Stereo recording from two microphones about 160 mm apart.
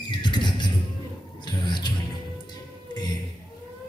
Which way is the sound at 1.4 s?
30° left (ahead or behind).